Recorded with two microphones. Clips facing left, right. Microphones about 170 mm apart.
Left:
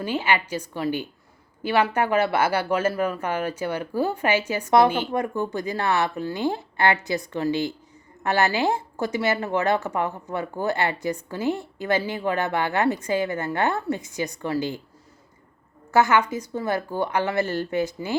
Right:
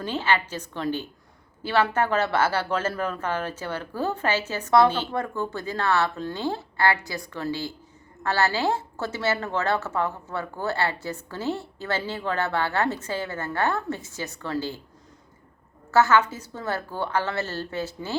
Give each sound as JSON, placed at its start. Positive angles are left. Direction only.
{"t": 0.0, "sound": "a woman's voice", "side_deg": 10}
{"t": 15.9, "sound": "a woman's voice", "side_deg": 15}